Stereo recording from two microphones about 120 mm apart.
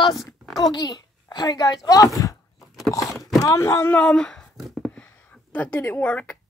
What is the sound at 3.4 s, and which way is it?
Speech, 25° left (ahead or behind).